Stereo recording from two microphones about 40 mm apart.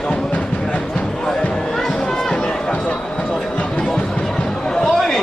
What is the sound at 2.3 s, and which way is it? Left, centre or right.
Run, left.